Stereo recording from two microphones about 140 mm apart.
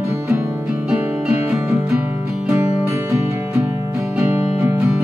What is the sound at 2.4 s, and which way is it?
Music, 20° right (ahead or behind).